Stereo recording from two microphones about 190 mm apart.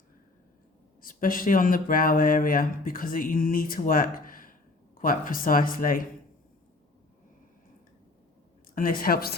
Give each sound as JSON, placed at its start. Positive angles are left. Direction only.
{"t": 1.0, "sound": "speech", "side_deg": 45}
{"t": 8.7, "sound": "speech", "side_deg": 45}